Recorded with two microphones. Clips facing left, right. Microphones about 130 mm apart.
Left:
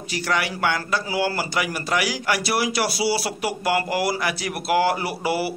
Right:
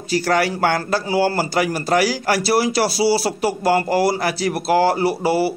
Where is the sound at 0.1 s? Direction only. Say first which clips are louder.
Right 7 dB; 40° right (ahead or behind).